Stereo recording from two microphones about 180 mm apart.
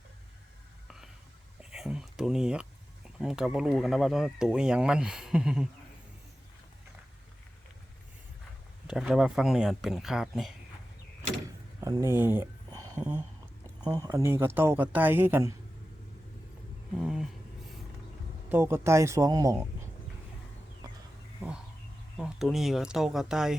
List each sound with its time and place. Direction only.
0.9 s a sound: centre (ahead or behind)
1.7 s speech: centre (ahead or behind)
8.9 s speech: centre (ahead or behind)
11.8 s a sound: 15° right (ahead or behind)
13.9 s speech: 20° right (ahead or behind)
17.0 s speech: 5° right (ahead or behind)
18.4 s speech: 10° right (ahead or behind)
20.8 s a sound: 20° right (ahead or behind)
22.2 s speech: centre (ahead or behind)